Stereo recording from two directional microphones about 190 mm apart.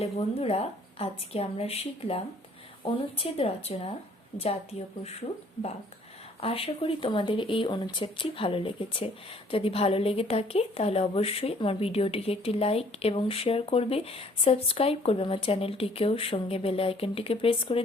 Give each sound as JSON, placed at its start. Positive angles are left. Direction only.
{"t": 0.0, "sound": "speech", "side_deg": 30}
{"t": 6.4, "sound": "speech", "side_deg": 30}